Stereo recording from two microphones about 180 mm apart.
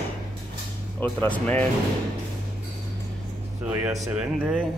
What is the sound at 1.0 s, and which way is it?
Speech, 10° left (ahead or behind).